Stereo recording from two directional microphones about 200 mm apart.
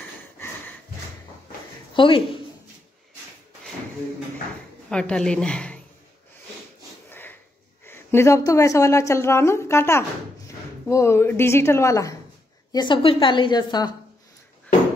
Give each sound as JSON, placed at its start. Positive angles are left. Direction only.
{"t": 2.0, "sound": "speech", "side_deg": 25}
{"t": 4.8, "sound": "a woman's voice", "side_deg": 5}
{"t": 7.1, "sound": "sniff", "side_deg": 10}
{"t": 7.8, "sound": "a woman's voice", "side_deg": 10}